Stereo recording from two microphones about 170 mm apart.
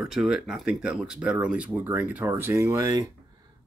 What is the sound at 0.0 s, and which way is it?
Speech, 5° right (ahead or behind).